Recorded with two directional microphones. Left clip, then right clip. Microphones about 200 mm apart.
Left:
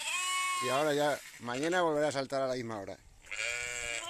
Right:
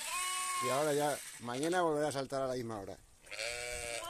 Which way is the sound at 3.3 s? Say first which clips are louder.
Left 4 dB; 30° right (ahead or behind).